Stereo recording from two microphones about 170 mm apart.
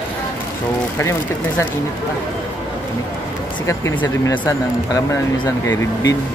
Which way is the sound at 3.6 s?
20° left (ahead or behind).